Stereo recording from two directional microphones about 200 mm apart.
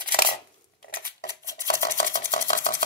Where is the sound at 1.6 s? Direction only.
50° left (ahead or behind).